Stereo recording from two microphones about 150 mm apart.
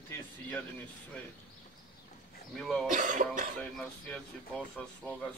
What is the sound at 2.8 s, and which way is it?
Speech, 55° right (ahead or behind).